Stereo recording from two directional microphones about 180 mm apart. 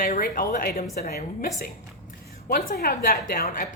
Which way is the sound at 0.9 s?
60° left (ahead or behind).